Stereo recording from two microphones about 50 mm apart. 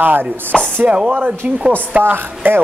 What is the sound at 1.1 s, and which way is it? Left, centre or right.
Speech, right.